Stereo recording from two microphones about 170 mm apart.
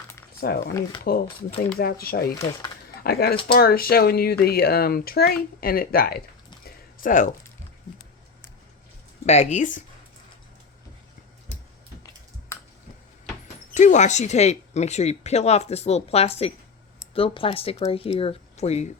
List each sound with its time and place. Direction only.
0.3 s speech: 65° left (ahead or behind)
0.7 s speech: 20° left (ahead or behind)
1.8 s speech: 65° left (ahead or behind)
7.0 s speech: 50° left (ahead or behind)
9.2 s speech: 40° left (ahead or behind)
13.7 s speech: 45° left (ahead or behind)